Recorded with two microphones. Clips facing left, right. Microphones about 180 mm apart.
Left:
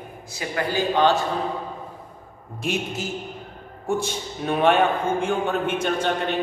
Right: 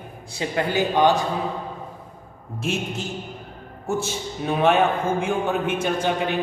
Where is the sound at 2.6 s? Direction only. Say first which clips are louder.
Even; centre (ahead or behind).